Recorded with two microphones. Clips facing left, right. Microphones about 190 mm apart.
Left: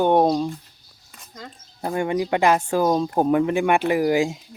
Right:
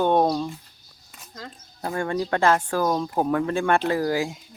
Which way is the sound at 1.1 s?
Centre (ahead or behind).